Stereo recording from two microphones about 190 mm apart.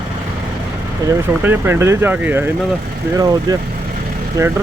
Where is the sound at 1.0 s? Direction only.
15° right (ahead or behind).